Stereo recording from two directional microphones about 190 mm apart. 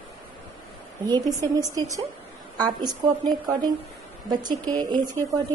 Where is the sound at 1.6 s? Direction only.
20° right (ahead or behind).